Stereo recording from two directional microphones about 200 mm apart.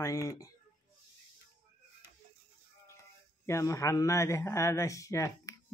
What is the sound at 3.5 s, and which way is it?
Speech, 15° left (ahead or behind).